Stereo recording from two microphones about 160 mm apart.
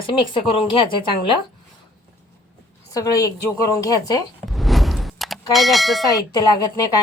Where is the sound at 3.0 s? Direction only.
20° left (ahead or behind).